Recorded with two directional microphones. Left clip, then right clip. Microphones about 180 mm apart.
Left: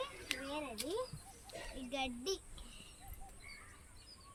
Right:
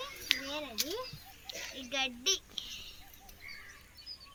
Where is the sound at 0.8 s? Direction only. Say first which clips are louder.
Right 4 dB; 20° right (ahead or behind).